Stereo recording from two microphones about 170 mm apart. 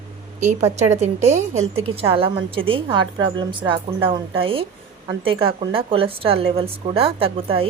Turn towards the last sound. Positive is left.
turn(degrees=-35)  # may be behind; listen again after turning